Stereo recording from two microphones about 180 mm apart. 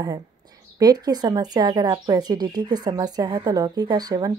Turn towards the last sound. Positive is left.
turn(degrees=-20)  # may be behind; listen again after turning